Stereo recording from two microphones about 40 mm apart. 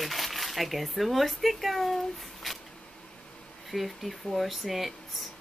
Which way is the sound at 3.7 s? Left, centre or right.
Centre.